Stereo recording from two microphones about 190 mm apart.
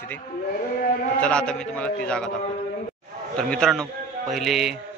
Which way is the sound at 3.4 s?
5° left (ahead or behind).